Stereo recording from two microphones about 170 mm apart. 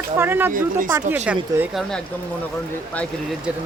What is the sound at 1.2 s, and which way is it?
Speech, 5° right (ahead or behind).